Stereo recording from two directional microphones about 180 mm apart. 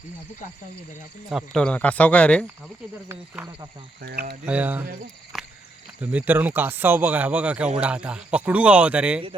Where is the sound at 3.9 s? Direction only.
60° right (ahead or behind).